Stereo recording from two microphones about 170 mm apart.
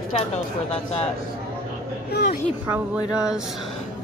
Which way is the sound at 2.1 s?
60° left (ahead or behind).